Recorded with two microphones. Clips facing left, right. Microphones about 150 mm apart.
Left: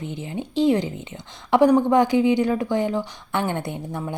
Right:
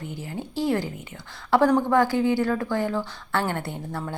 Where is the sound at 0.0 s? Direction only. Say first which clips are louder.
Left 3 dB; 20° left (ahead or behind).